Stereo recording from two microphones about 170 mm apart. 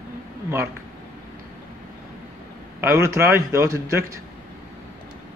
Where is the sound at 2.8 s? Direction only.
15° right (ahead or behind).